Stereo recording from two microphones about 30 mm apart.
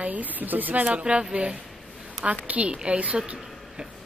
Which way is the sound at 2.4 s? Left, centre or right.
Right.